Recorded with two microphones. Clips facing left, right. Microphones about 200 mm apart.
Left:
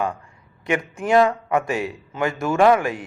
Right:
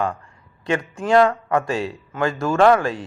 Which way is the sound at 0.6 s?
20° left (ahead or behind).